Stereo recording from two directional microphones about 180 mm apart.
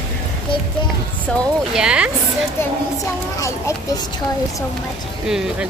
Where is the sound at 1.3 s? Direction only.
5° left (ahead or behind).